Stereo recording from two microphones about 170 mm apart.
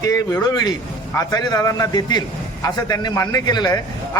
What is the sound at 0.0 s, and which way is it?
A man's voice, 20° left (ahead or behind).